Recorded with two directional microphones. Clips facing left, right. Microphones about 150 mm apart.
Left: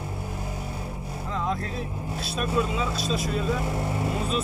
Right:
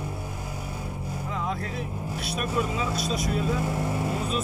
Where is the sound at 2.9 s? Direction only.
25° left (ahead or behind).